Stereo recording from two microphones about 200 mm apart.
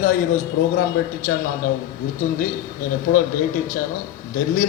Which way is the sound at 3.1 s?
40° left (ahead or behind).